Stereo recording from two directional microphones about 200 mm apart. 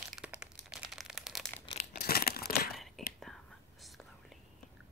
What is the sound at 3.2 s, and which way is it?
Whispering, centre (ahead or behind).